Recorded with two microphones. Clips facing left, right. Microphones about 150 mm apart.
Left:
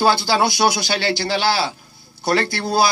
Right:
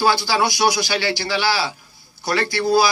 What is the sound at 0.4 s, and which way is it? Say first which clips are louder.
A man's voice: left 1 dB; 55° left (ahead or behind).